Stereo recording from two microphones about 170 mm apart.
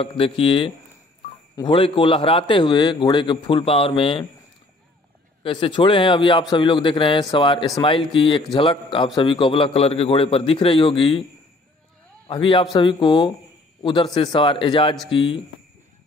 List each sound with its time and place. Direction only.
0.0 s a man's voice: 35° left (ahead or behind)
5.4 s a man's voice: 30° left (ahead or behind)
12.3 s a man's voice: 30° left (ahead or behind)